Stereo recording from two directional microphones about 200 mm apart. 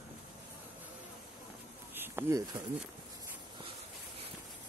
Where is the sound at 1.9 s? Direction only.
10° right (ahead or behind).